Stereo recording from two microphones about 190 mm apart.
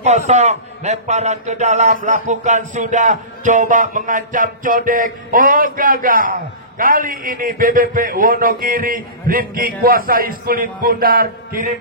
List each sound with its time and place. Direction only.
0.0 s a man's voice: 35° right (ahead or behind)